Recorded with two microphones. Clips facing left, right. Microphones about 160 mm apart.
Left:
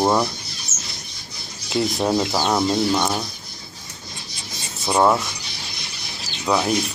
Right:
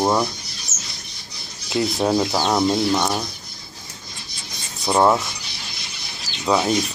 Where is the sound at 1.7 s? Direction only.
Centre (ahead or behind).